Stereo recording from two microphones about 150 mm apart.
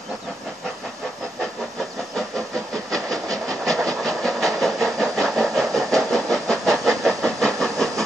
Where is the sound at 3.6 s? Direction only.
5° left (ahead or behind).